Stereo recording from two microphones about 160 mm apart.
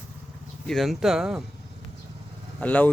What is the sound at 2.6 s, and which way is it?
Speech, 10° left (ahead or behind).